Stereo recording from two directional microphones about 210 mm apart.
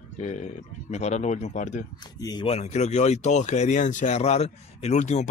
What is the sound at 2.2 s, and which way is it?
Speech, 20° left (ahead or behind).